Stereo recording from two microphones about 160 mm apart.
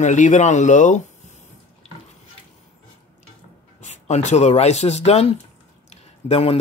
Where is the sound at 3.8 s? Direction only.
45° left (ahead or behind).